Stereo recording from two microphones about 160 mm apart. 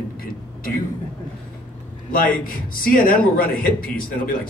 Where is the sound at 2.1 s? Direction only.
60° left (ahead or behind).